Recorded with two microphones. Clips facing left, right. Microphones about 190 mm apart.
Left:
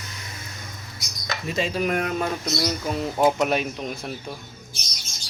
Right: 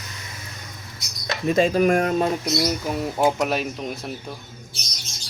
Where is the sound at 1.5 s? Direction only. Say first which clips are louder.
Right 7 dB; 50° right (ahead or behind).